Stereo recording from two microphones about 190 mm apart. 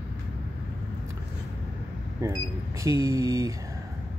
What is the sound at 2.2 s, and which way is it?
Speech, 15° right (ahead or behind).